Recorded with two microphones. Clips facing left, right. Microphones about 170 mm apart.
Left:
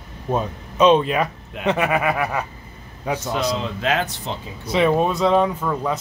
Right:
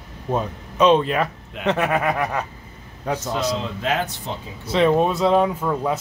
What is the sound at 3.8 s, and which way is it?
Speech, 90° left.